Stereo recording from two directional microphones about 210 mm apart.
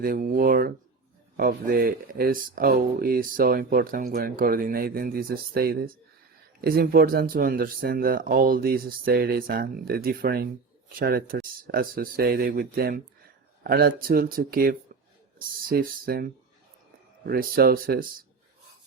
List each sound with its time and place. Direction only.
0.0 s speech: 40° right (ahead or behind)